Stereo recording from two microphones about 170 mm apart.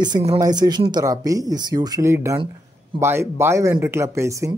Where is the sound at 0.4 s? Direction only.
25° right (ahead or behind).